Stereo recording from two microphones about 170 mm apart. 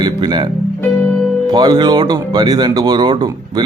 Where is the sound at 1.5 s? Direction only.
25° right (ahead or behind).